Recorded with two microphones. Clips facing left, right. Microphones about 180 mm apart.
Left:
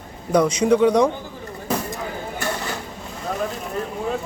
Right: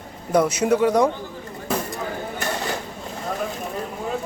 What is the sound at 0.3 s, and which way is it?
Speech, 5° right (ahead or behind).